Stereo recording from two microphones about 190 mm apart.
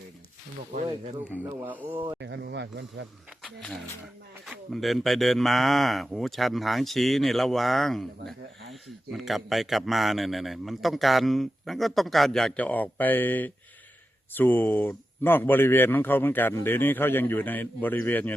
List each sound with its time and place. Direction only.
1.5 s speech: 10° right (ahead or behind)
2.1 s speech: 65° right (ahead or behind)
3.4 s speech: 5° left (ahead or behind)